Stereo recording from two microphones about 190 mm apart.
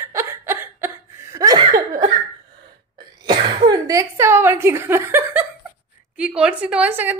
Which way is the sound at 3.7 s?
15° right (ahead or behind).